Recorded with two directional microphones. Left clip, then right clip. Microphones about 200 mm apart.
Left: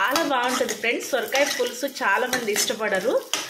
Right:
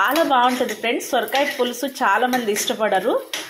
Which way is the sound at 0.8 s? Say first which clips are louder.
Right 3 dB; 10° right (ahead or behind).